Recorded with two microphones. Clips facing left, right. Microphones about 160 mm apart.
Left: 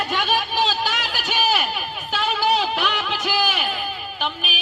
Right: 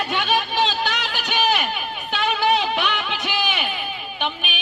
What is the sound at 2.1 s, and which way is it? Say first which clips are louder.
Music: right 1 dB; centre (ahead or behind).